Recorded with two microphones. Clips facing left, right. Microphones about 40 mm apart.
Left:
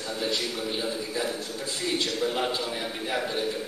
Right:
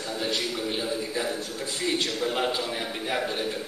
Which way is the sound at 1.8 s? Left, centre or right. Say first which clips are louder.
Right 1 dB; right.